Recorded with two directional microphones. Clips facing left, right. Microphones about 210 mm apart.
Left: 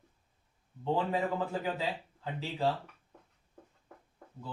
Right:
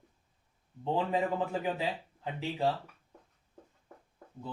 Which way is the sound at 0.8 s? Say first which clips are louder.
Right 1 dB; 15° right (ahead or behind).